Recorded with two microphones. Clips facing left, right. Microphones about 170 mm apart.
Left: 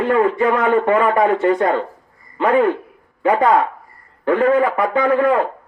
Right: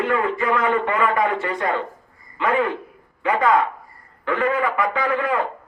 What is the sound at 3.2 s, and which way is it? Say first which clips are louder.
A man's voice: left 4 dB; 35° left (ahead or behind).